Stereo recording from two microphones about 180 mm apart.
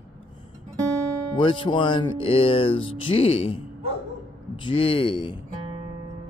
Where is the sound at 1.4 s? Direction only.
25° left (ahead or behind).